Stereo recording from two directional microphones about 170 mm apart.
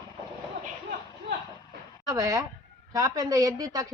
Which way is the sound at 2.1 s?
20° right (ahead or behind).